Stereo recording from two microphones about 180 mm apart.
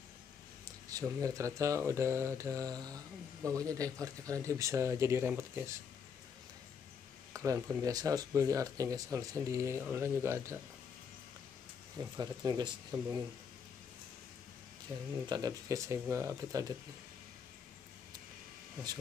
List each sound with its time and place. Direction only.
0.8 s speech: 20° right (ahead or behind)
7.3 s speech: 15° right (ahead or behind)
12.2 s speech: 20° right (ahead or behind)
15.2 s speech: 20° right (ahead or behind)